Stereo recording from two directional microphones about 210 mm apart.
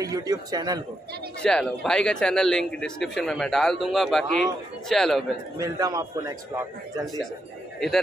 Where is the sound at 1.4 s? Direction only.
5° left (ahead or behind).